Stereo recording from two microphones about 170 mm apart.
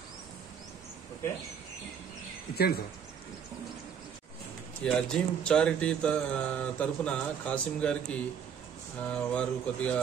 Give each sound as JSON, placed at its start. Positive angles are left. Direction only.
{"t": 2.5, "sound": "speech", "side_deg": 65}
{"t": 4.8, "sound": "speech", "side_deg": 5}